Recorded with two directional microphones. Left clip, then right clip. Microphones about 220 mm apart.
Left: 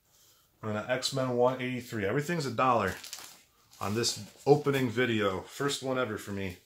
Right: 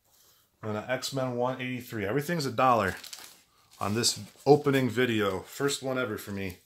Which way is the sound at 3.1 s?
10° right (ahead or behind).